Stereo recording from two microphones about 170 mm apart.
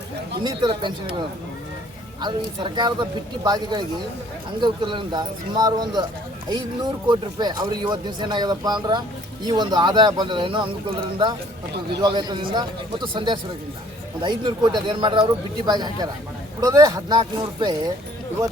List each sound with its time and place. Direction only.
0.4 s speech: 25° right (ahead or behind)
2.2 s speech: 25° right (ahead or behind)
7.1 s speech: 25° right (ahead or behind)